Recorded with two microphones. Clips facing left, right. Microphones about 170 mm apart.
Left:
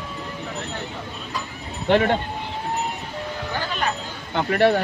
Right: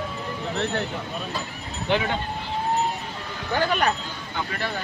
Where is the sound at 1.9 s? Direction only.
55° left (ahead or behind).